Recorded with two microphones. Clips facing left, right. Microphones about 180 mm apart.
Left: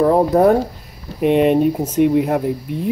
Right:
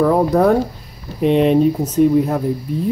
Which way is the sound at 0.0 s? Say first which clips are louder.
Left 1 dB; 25° left (ahead or behind).